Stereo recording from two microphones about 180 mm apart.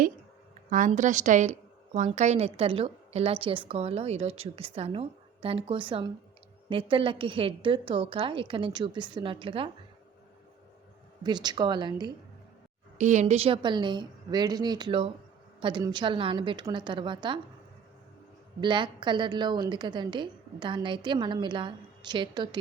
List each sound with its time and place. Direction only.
0.7 s a woman's voice: 45° right (ahead or behind); by 9.7 s 30° right (ahead or behind)
11.2 s a woman's voice: 25° right (ahead or behind)
13.0 s a woman's voice: 40° right (ahead or behind)
18.6 s a woman's voice: 25° right (ahead or behind)